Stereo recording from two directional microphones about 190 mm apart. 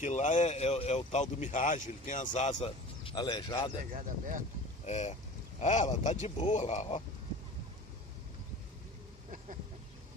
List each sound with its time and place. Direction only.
0.0 s speech: 40° left (ahead or behind)
3.9 s speech: 45° right (ahead or behind)
4.9 s speech: 35° left (ahead or behind)